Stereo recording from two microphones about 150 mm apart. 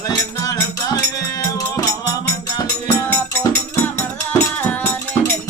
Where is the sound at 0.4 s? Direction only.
25° left (ahead or behind).